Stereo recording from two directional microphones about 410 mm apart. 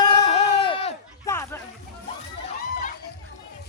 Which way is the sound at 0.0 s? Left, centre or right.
Centre.